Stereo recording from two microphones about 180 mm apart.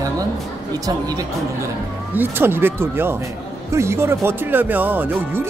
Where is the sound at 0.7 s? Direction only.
20° right (ahead or behind).